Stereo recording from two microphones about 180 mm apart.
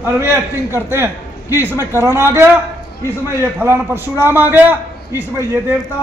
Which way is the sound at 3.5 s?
10° right (ahead or behind).